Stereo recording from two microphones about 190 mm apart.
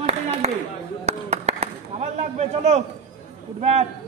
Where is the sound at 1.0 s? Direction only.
35° right (ahead or behind).